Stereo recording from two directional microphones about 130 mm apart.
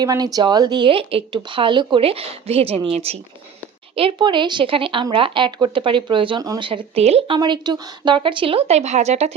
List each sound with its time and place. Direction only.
0.0 s speech: 30° right (ahead or behind); by 3.2 s 50° right (ahead or behind)
3.9 s speech: 40° right (ahead or behind)
7.3 s speech: 35° right (ahead or behind); by 9.3 s 60° right (ahead or behind)